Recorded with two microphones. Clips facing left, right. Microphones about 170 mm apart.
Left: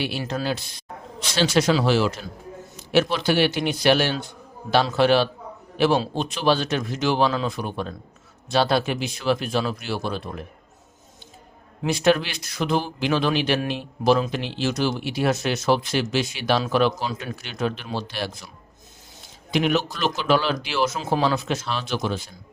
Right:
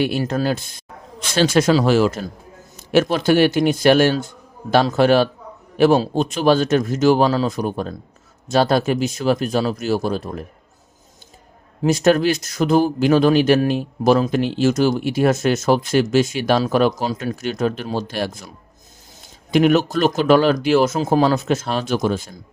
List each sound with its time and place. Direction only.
0.0 s speech: 50° right (ahead or behind)
11.8 s speech: 45° right (ahead or behind)